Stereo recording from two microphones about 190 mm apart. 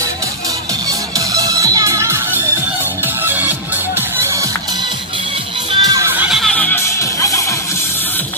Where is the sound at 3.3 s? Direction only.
10° right (ahead or behind).